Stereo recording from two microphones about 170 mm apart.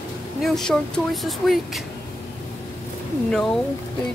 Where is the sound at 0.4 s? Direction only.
5° left (ahead or behind).